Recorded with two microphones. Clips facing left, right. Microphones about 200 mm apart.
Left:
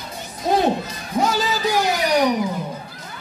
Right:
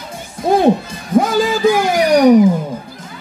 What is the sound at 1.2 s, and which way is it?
Speech, 50° right (ahead or behind).